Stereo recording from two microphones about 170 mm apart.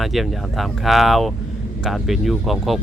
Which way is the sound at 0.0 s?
Centre (ahead or behind).